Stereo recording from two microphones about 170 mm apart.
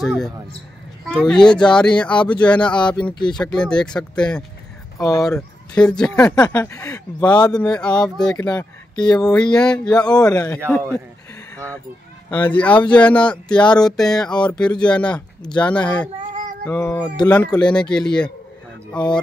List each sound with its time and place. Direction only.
0.0 s speech: centre (ahead or behind)
5.0 s speech: 20° left (ahead or behind)
5.3 s speech: 5° left (ahead or behind); by 7.5 s 20° left (ahead or behind)
7.5 s speech: 5° left (ahead or behind)
12.3 s speech: 10° left (ahead or behind)